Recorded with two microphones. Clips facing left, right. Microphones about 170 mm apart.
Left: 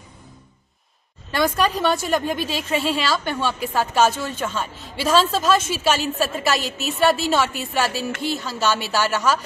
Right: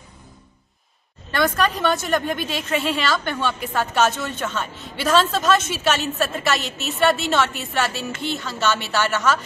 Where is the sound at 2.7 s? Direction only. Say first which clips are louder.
Even; 35° left (ahead or behind).